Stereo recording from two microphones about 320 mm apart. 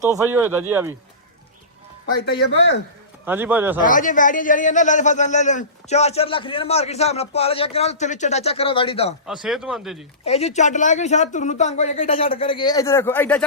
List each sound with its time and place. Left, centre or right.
0.3 s speech: centre
2.2 s speech: left
3.2 s speech: centre
3.8 s a man's voice: left
9.2 s speech: centre
10.2 s a man's voice: centre